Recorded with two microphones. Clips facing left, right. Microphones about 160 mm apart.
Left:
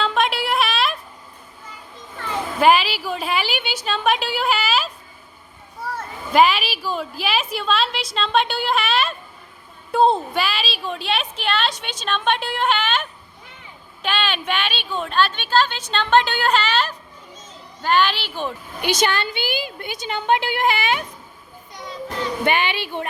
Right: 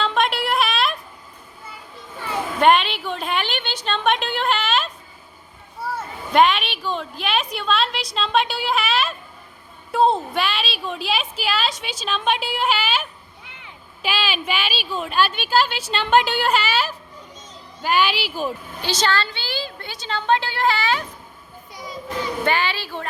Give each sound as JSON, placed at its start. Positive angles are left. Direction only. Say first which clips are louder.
{"t": 0.0, "sound": "a sound", "louder": "even", "side_deg": 0}
{"t": 2.6, "sound": "a woman's voice", "louder": "even", "side_deg": 5}
{"t": 6.3, "sound": "a woman's voice", "louder": "left 1 dB", "side_deg": 5}
{"t": 18.8, "sound": "a woman's voice", "louder": "left 2 dB", "side_deg": 15}
{"t": 22.4, "sound": "a woman's voice", "louder": "left 2 dB", "side_deg": 20}